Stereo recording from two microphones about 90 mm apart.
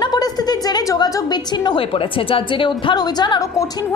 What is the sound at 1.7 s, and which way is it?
A woman's voice, 85° left.